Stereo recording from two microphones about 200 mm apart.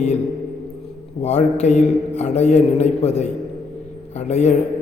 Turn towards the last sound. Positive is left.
turn(degrees=35)  # may be behind; listen again after turning